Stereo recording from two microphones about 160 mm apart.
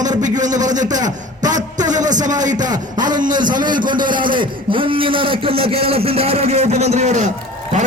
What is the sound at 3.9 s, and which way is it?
A man's voice, 30° right (ahead or behind).